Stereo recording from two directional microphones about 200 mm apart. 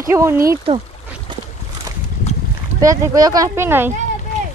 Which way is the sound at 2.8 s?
15° right (ahead or behind).